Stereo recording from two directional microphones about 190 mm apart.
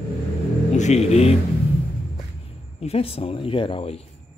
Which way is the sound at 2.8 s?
30° left (ahead or behind).